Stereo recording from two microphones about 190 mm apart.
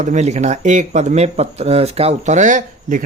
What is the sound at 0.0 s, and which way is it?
Speech, 40° right (ahead or behind).